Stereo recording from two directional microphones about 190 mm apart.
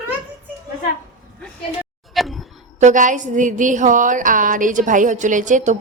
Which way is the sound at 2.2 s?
Centre (ahead or behind).